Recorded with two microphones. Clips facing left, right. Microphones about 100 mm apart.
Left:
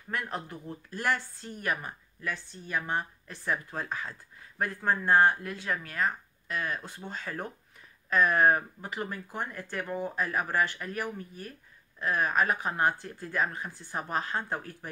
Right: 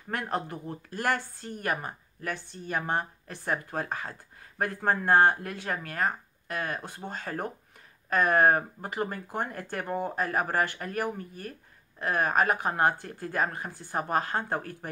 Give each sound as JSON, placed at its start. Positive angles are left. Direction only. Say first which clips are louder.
{"t": 0.1, "sound": "a woman's voice", "louder": "right 4 dB", "side_deg": -60}